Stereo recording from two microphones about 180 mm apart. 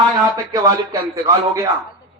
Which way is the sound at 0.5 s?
20° right (ahead or behind).